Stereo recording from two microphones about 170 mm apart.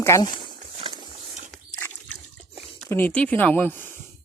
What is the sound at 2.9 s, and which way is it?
Speech, 10° left (ahead or behind).